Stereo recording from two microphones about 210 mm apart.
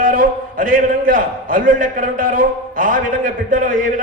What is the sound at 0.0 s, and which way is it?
A man's voice, 40° right (ahead or behind).